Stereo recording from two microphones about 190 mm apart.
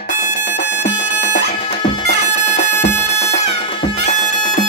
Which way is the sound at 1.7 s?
30° left (ahead or behind).